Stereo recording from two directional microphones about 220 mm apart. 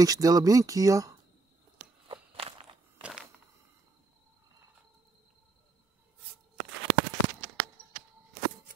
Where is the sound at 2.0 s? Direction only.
25° right (ahead or behind).